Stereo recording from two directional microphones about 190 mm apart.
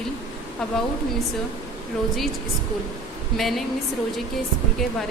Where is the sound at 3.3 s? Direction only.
Centre (ahead or behind).